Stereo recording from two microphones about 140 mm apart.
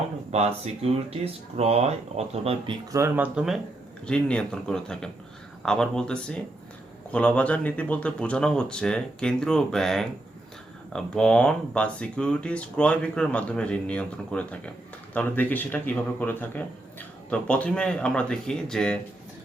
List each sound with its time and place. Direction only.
0.3 s speech: 45° right (ahead or behind)
2.9 s speech: 15° right (ahead or behind)
4.0 s a man's voice: 5° left (ahead or behind)